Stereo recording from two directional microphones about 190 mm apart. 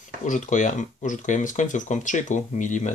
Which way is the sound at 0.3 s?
40° left (ahead or behind).